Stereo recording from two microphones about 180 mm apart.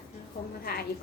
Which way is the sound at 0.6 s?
55° left (ahead or behind).